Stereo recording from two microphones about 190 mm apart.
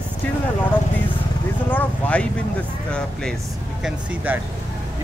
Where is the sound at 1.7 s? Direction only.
5° left (ahead or behind).